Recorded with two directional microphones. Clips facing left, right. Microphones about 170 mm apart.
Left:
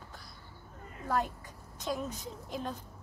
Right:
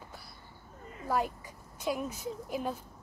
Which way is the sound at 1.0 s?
10° right (ahead or behind).